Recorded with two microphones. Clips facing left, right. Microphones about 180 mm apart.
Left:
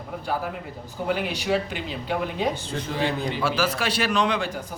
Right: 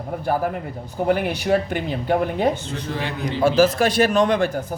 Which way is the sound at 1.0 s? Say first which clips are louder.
Right 5 dB; 50° right (ahead or behind).